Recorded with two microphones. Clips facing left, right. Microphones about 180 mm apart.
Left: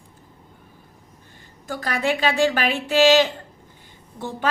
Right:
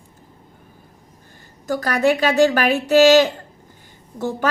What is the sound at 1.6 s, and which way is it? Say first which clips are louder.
A woman's voice: right 6 dB; 45° right (ahead or behind).